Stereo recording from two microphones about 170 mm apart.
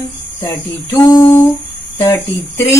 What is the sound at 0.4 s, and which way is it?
A woman's voice, 20° left (ahead or behind).